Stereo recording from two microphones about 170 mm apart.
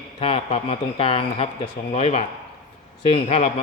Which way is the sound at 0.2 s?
35° left (ahead or behind).